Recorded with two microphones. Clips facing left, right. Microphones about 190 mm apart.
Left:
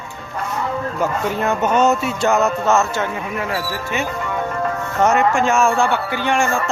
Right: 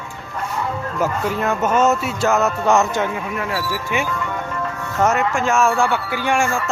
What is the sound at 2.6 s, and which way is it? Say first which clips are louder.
Speech: right 1 dB; 15° right (ahead or behind).